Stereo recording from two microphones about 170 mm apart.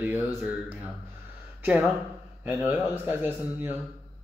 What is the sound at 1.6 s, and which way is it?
Speech, 5° right (ahead or behind).